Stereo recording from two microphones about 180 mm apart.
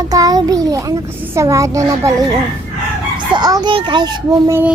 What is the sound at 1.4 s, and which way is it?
A child's voice, 15° right (ahead or behind).